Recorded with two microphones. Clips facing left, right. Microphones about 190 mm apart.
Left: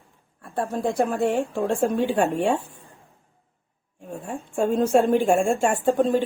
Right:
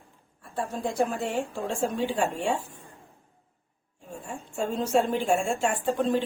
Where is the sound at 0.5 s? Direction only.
60° left (ahead or behind).